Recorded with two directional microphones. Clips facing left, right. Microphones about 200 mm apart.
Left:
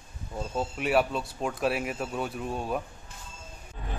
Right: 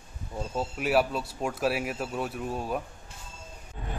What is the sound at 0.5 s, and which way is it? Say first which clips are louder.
Speech: even; centre (ahead or behind).